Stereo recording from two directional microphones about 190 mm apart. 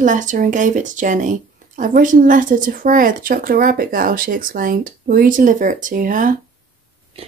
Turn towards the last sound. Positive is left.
turn(degrees=-45)  # may be behind; listen again after turning